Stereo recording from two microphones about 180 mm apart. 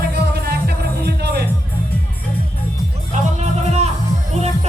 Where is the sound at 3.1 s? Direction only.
40° right (ahead or behind).